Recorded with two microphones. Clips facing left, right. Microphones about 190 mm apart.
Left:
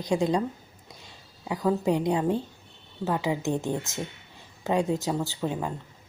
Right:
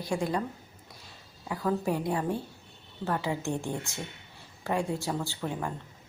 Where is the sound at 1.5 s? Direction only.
20° left (ahead or behind).